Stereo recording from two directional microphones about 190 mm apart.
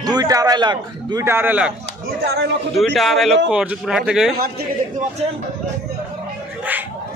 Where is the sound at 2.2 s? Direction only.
60° right (ahead or behind).